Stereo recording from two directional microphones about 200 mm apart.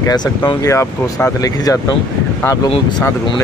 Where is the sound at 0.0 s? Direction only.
20° left (ahead or behind).